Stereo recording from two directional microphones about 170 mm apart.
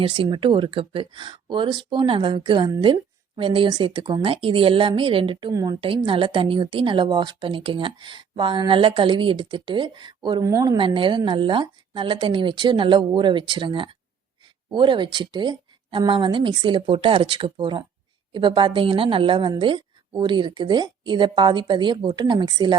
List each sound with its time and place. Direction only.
0.0 s speech: 30° right (ahead or behind)